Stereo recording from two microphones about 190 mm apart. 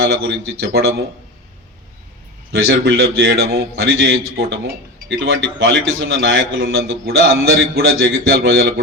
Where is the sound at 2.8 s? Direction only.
60° right (ahead or behind); by 6.6 s 90° right.